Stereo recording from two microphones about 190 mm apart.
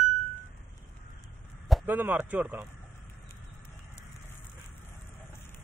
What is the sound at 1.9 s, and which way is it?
Speech, 10° right (ahead or behind).